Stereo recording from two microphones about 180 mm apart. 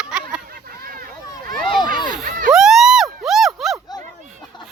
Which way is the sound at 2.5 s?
Centre (ahead or behind).